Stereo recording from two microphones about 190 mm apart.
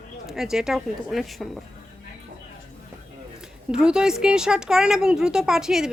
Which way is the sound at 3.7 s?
5° right (ahead or behind).